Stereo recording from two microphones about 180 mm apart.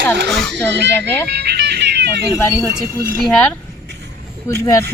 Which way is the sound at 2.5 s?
15° right (ahead or behind).